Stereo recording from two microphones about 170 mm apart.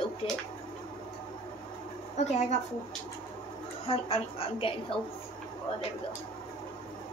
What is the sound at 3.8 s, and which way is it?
Speech, 35° left (ahead or behind).